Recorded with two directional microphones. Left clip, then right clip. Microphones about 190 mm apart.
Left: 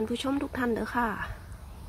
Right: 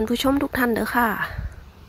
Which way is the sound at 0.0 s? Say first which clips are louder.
Right 9 dB; 30° right (ahead or behind).